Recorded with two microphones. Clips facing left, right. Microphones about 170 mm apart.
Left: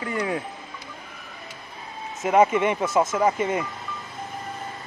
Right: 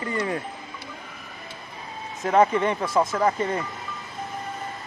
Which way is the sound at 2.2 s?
10° left (ahead or behind).